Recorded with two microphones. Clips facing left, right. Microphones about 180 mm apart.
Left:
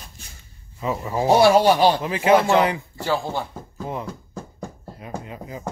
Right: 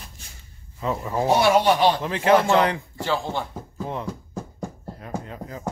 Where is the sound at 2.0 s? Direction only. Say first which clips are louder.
Left 1 dB; 5° left (ahead or behind).